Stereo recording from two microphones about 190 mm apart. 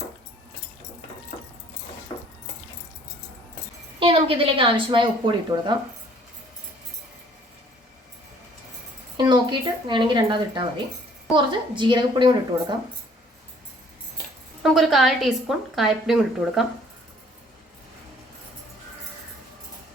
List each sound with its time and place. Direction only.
4.0 s a woman's voice: 30° right (ahead or behind)
9.1 s a woman's voice: 25° right (ahead or behind)
11.8 s a woman's voice: 25° right (ahead or behind)
14.6 s a woman's voice: centre (ahead or behind)